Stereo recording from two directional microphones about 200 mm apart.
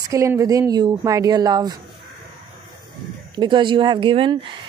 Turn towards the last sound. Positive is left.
turn(degrees=-25)  # may be behind; listen again after turning